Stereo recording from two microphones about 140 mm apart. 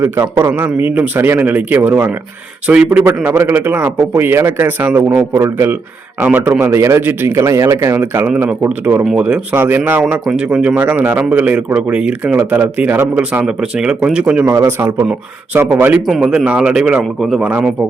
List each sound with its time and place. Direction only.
0.0 s speech: 15° right (ahead or behind)
14.4 s a man's voice: 25° right (ahead or behind)
14.7 s speech: 15° right (ahead or behind)
16.0 s speech: 5° right (ahead or behind)